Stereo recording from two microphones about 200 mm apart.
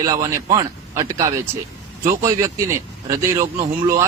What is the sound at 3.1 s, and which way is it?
Speech, 15° right (ahead or behind).